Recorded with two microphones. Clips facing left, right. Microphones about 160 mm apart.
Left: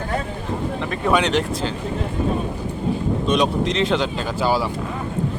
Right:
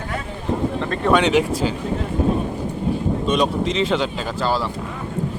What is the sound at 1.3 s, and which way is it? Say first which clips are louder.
Speech: right 3 dB; 10° right (ahead or behind).